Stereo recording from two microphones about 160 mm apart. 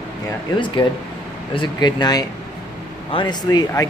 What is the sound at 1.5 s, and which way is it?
Speech, 30° left (ahead or behind).